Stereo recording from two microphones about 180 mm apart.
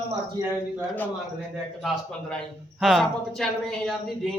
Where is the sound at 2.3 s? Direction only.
Centre (ahead or behind).